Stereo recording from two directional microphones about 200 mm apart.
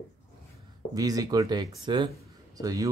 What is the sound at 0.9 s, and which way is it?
Speech, 20° right (ahead or behind).